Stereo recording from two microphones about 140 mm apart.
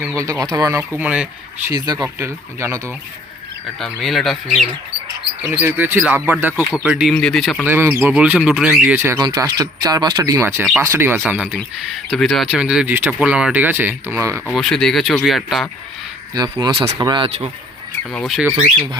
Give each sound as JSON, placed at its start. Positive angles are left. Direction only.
{"t": 0.2, "sound": "speech", "side_deg": -25}
{"t": 0.9, "sound": "speech", "side_deg": -10}
{"t": 1.7, "sound": "speech", "side_deg": -30}
{"t": 3.8, "sound": "speech", "side_deg": 0}
{"t": 5.5, "sound": "speech", "side_deg": -15}
{"t": 7.2, "sound": "speech", "side_deg": 5}
{"t": 7.6, "sound": "speech", "side_deg": -15}
{"t": 9.1, "sound": "speech", "side_deg": -25}
{"t": 11.2, "sound": "speech", "side_deg": -5}
{"t": 14.4, "sound": "speech", "side_deg": 0}
{"t": 16.3, "sound": "speech", "side_deg": -30}
{"t": 18.1, "sound": "speech", "side_deg": 5}